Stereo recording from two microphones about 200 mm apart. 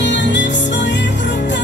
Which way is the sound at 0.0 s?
60° left (ahead or behind).